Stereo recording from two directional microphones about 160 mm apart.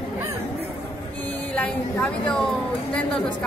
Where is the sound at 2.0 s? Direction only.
5° left (ahead or behind).